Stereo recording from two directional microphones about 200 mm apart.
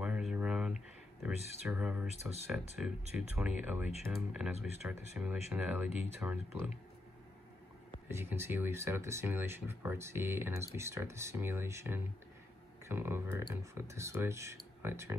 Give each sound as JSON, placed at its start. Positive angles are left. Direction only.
{"t": 0.0, "sound": "a sound", "side_deg": -5}
{"t": 1.2, "sound": "speech", "side_deg": -5}
{"t": 8.1, "sound": "speech", "side_deg": -10}